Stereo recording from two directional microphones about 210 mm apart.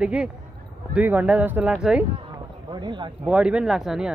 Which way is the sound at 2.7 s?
20° right (ahead or behind).